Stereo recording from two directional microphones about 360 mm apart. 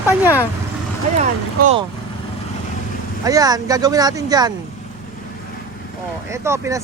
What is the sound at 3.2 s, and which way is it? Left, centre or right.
Speech, centre.